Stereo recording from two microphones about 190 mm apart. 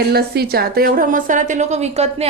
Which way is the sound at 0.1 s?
55° right (ahead or behind).